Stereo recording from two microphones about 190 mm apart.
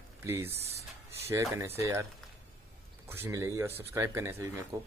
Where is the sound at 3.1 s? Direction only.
15° right (ahead or behind).